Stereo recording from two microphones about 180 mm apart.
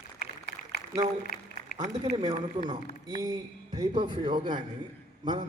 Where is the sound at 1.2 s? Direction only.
50° left (ahead or behind).